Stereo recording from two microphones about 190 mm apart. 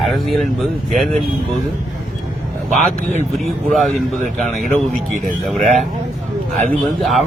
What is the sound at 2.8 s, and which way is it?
Speech, 40° right (ahead or behind).